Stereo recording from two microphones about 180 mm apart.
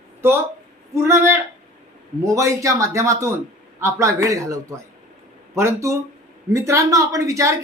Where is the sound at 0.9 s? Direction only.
15° right (ahead or behind).